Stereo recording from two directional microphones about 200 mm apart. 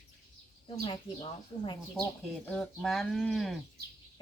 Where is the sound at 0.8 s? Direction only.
25° left (ahead or behind).